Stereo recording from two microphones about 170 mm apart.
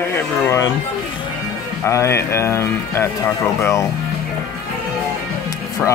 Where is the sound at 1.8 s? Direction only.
15° left (ahead or behind).